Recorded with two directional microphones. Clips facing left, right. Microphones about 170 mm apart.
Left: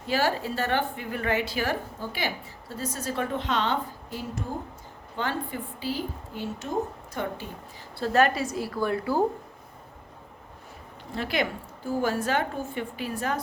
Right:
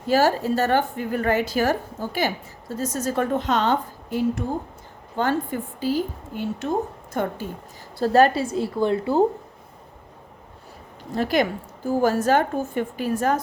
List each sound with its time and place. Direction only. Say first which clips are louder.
0.1 s a woman's voice: right 7 dB; 40° right (ahead or behind)
5.1 s a woman's voice: right 7 dB; 45° right (ahead or behind)
7.9 s a woman's voice: right 5 dB; 35° right (ahead or behind)
11.1 s a woman's voice: right 7 dB; 40° right (ahead or behind)